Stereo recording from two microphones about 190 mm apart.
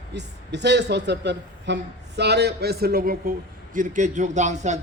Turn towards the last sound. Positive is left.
turn(degrees=-40)  # may be behind; listen again after turning